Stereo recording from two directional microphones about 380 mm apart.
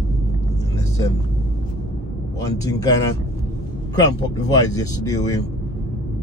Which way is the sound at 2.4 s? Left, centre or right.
Centre.